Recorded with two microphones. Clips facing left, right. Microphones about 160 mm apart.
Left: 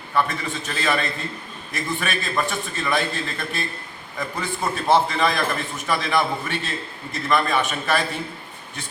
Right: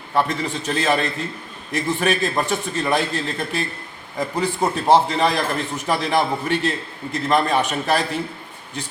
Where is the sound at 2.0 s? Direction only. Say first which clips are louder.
Right 5 dB; 35° right (ahead or behind).